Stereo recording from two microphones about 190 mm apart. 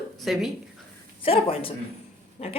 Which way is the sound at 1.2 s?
30° left (ahead or behind).